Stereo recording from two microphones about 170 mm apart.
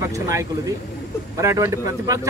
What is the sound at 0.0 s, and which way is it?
Speech, 15° right (ahead or behind).